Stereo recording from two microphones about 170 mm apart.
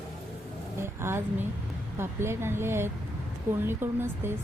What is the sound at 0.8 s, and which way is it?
Vehicle, 15° right (ahead or behind).